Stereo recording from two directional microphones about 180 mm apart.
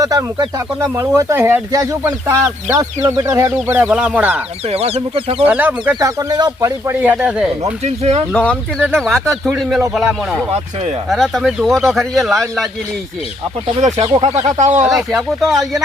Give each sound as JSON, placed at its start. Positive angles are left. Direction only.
{"t": 0.0, "sound": "speech", "side_deg": -20}
{"t": 4.7, "sound": "speech", "side_deg": -35}
{"t": 5.5, "sound": "speech", "side_deg": -10}
{"t": 7.6, "sound": "speech", "side_deg": -35}
{"t": 8.3, "sound": "speech", "side_deg": 5}
{"t": 11.1, "sound": "speech", "side_deg": 0}
{"t": 13.8, "sound": "speech", "side_deg": -40}
{"t": 15.4, "sound": "speech", "side_deg": 0}